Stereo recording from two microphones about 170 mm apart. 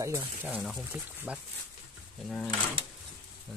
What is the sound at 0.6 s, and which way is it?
Speech, centre (ahead or behind).